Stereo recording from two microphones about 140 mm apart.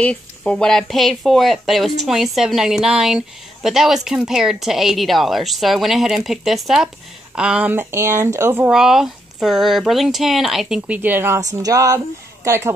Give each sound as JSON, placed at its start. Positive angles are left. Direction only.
{"t": 0.0, "sound": "speech", "side_deg": 10}
{"t": 8.6, "sound": "a woman's voice", "side_deg": -5}